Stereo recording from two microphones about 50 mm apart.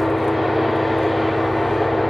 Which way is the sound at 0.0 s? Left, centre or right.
Centre.